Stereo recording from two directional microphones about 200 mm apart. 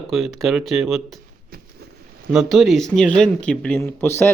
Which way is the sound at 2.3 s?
Centre (ahead or behind).